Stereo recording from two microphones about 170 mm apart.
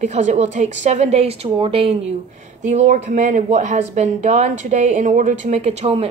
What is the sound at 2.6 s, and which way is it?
A woman's voice, 45° right (ahead or behind).